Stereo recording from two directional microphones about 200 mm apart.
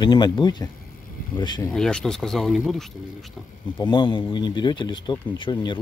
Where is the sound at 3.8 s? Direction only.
25° left (ahead or behind).